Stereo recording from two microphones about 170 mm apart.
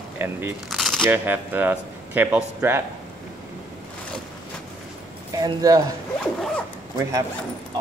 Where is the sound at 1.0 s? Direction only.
10° right (ahead or behind).